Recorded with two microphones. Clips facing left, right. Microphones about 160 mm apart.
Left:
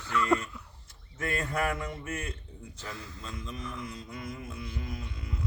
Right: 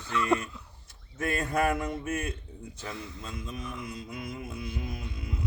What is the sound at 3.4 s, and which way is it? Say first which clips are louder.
Music: even; 10° right (ahead or behind).